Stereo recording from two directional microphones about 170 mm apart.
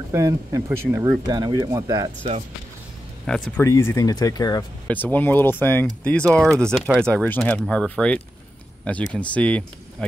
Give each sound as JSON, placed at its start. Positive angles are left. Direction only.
{"t": 0.1, "sound": "speech", "side_deg": -20}
{"t": 3.3, "sound": "speech", "side_deg": 5}
{"t": 3.6, "sound": "speech", "side_deg": 15}
{"t": 4.8, "sound": "speech", "side_deg": 10}